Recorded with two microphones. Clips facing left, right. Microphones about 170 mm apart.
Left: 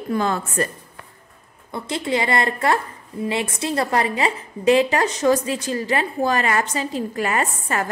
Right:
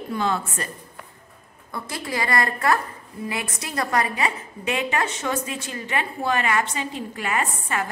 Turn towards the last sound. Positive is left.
turn(degrees=40)  # may be behind; listen again after turning